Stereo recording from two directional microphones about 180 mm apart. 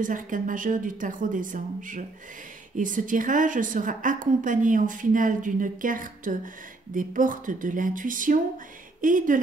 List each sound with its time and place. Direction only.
0.0 s a woman's voice: 45° right (ahead or behind)